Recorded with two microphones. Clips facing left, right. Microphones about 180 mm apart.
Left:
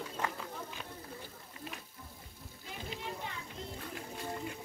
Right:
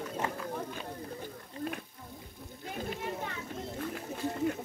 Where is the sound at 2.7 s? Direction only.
55° right (ahead or behind).